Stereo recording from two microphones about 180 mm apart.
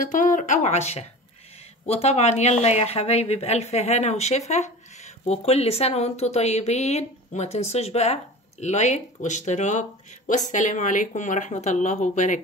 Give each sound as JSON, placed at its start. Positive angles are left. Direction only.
{"t": 0.0, "sound": "a woman's voice", "side_deg": 45}